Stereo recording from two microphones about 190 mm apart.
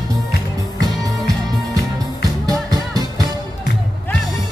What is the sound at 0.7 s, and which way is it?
Music, 20° right (ahead or behind).